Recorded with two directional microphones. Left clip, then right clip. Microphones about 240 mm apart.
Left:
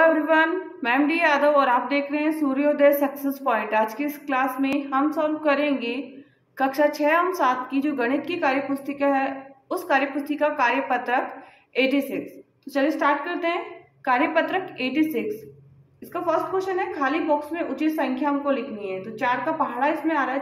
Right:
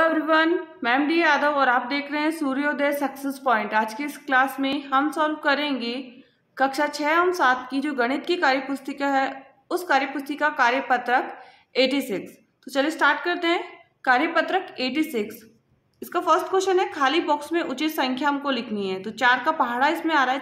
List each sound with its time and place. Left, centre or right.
0.0 s a woman's voice: centre
16.1 s a woman's voice: right